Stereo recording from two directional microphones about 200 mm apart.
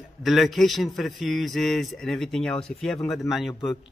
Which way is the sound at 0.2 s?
Centre (ahead or behind).